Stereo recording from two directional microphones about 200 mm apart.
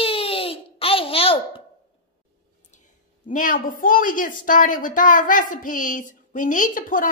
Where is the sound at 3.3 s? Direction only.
45° left (ahead or behind).